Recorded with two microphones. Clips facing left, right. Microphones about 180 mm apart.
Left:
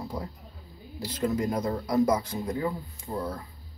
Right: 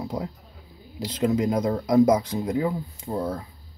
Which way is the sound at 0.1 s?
15° right (ahead or behind).